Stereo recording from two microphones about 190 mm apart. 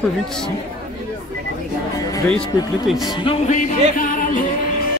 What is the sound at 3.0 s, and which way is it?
Music, 25° left (ahead or behind).